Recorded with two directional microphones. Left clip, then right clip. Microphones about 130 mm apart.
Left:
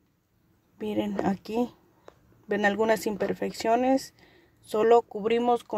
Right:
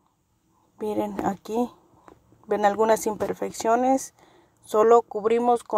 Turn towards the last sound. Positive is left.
turn(degrees=0)  # may be behind; listen again after turning